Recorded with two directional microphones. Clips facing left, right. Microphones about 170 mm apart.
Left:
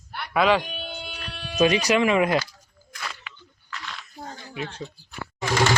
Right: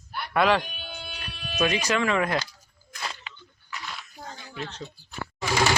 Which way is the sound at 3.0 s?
30° right (ahead or behind).